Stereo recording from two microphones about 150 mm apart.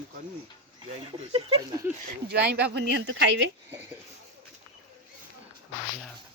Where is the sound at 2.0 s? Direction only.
90° right.